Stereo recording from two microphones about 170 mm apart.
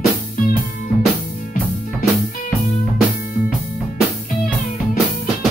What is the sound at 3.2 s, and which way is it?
Music, 55° left (ahead or behind).